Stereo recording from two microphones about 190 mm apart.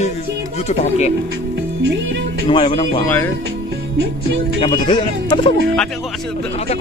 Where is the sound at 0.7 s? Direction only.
35° left (ahead or behind).